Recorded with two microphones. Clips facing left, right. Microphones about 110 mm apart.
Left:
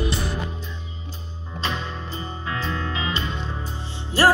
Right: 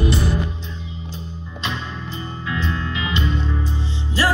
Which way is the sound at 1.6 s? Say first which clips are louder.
Even; 35° left (ahead or behind).